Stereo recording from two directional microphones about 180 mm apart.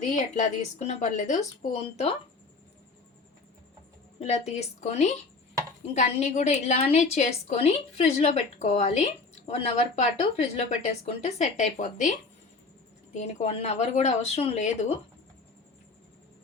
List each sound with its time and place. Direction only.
0.0 s a woman's voice: 45° left (ahead or behind)
4.2 s a woman's voice: 35° left (ahead or behind)
13.1 s a woman's voice: 35° left (ahead or behind)